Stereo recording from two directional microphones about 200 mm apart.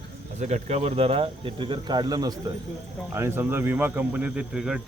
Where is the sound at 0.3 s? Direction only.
35° right (ahead or behind).